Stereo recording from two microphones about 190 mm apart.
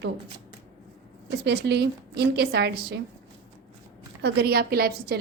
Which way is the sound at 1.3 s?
60° right (ahead or behind).